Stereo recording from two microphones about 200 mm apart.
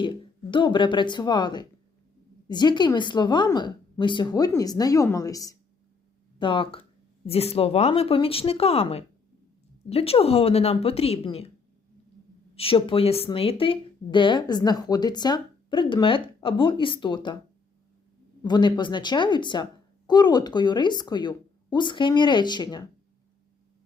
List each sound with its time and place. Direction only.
0.0 s speech: 25° left (ahead or behind)
12.5 s speech: 25° left (ahead or behind)
18.4 s speech: 20° left (ahead or behind)